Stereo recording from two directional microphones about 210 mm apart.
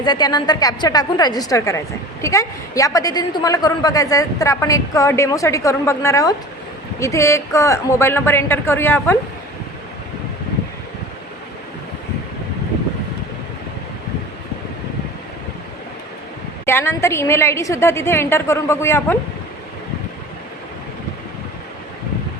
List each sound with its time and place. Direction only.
0.0 s a woman's voice: 20° left (ahead or behind)
16.6 s a woman's voice: 10° left (ahead or behind)